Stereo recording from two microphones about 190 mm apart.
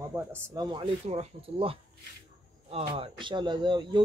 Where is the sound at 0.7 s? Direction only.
30° right (ahead or behind).